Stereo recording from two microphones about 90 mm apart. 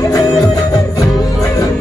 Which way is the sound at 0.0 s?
40° left (ahead or behind).